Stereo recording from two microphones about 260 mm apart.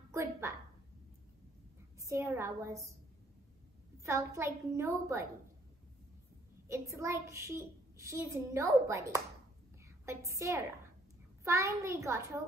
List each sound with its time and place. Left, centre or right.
0.1 s a woman's voice: centre
2.0 s a woman's voice: centre
4.0 s a child's voice: centre
6.7 s a child's voice: centre
9.8 s a sound: centre
11.4 s a child's voice: centre